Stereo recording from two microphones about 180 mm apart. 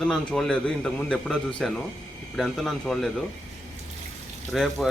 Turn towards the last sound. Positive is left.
turn(degrees=0)  # may be behind; listen again after turning